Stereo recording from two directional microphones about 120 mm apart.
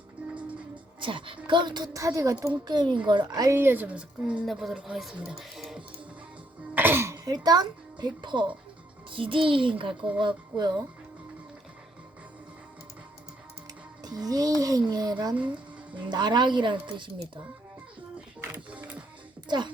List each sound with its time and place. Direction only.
0.9 s a woman's voice: 45° right (ahead or behind); by 2.5 s 25° right (ahead or behind)
2.5 s speech: 40° right (ahead or behind)
3.5 s speech: 20° right (ahead or behind)
5.3 s music: centre (ahead or behind)
6.7 s cough: 15° right (ahead or behind)
7.3 s a child's voice: 35° right (ahead or behind)
14.0 s speech: 35° right (ahead or behind)
15.4 s music: 10° right (ahead or behind)
16.0 s speech: 40° right (ahead or behind)
18.3 s music: 10° right (ahead or behind)
19.5 s a woman's voice: 40° right (ahead or behind)